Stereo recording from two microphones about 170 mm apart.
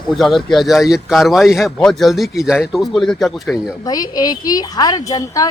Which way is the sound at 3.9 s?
20° left (ahead or behind).